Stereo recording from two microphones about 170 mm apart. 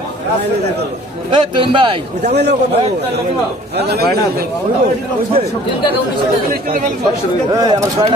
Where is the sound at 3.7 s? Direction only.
70° right (ahead or behind).